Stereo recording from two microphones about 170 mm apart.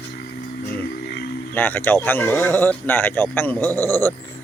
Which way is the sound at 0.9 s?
70° left (ahead or behind).